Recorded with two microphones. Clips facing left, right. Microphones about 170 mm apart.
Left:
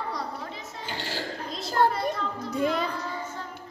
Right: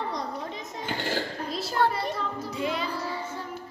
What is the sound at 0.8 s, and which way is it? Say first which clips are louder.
Cough: right 4 dB; 55° right (ahead or behind).